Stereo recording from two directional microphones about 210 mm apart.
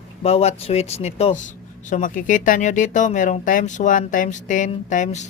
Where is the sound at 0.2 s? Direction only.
30° left (ahead or behind).